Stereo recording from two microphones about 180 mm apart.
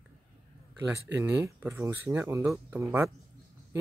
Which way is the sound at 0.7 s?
15° right (ahead or behind).